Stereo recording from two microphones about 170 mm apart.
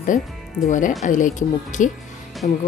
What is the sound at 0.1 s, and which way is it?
Speech, 50° left (ahead or behind).